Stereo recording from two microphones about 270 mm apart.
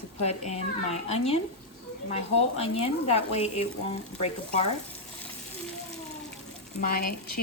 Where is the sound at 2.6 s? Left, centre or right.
Left.